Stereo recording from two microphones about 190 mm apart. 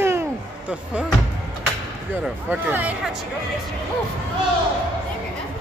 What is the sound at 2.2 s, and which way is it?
Speech, 10° right (ahead or behind).